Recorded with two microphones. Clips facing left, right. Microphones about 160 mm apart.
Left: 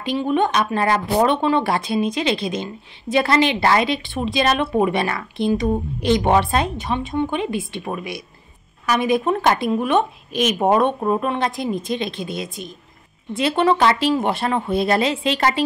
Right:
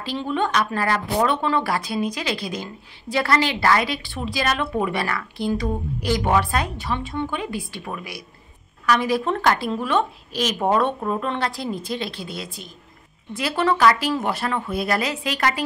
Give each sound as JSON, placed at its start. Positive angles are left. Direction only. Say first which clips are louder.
{"t": 0.0, "sound": "speech", "louder": "left 5 dB", "side_deg": 20}